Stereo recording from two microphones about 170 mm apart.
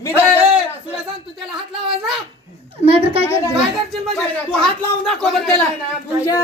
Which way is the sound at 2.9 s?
35° right (ahead or behind).